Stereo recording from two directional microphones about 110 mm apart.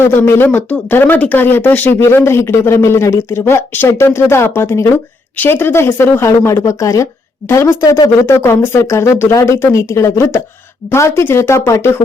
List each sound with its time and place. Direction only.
0.0 s speech: 20° left (ahead or behind)